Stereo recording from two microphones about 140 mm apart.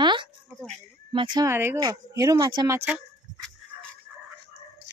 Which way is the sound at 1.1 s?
35° right (ahead or behind).